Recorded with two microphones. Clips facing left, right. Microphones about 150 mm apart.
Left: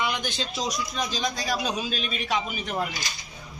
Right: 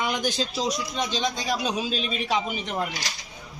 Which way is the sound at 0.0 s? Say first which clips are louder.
Right 3 dB; 45° right (ahead or behind).